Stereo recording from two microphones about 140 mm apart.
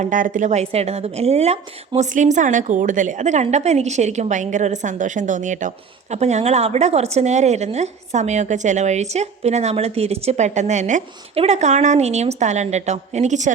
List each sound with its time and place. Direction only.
0.0 s a woman's voice: 70° right (ahead or behind)